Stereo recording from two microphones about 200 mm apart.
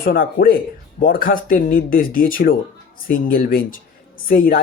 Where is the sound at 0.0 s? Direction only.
50° left (ahead or behind).